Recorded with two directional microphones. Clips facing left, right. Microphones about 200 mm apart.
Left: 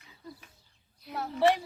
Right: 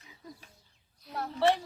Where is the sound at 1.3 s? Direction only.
15° left (ahead or behind).